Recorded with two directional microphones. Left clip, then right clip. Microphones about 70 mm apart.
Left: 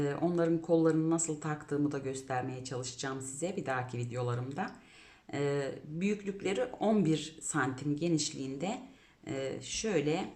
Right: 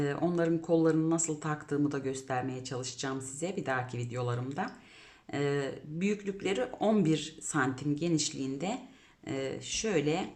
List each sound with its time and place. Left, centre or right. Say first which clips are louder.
0.0 s speech: right 1 dB; right